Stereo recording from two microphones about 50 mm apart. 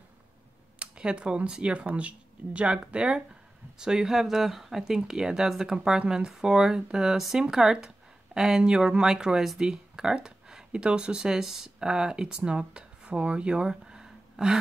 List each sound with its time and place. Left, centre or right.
0.7 s speech: right